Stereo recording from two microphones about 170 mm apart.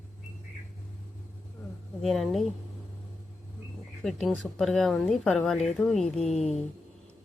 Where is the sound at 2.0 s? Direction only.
Centre (ahead or behind).